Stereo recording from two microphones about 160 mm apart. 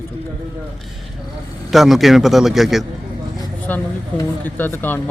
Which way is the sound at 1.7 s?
Centre (ahead or behind).